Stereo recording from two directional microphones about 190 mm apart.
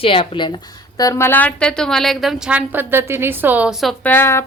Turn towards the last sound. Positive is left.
turn(degrees=10)  # may be behind; listen again after turning